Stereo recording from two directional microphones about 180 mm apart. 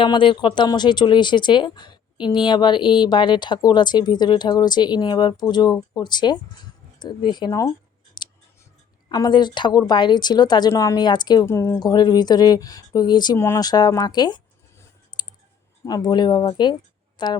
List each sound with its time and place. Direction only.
0.0 s speech: 25° left (ahead or behind)
8.2 s scissors: 25° left (ahead or behind)
9.0 s speech: 20° left (ahead or behind)
15.1 s clicking: 25° left (ahead or behind)
15.8 s speech: 20° left (ahead or behind)